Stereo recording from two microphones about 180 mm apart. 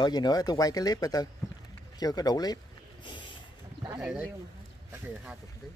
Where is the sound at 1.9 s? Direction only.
20° left (ahead or behind).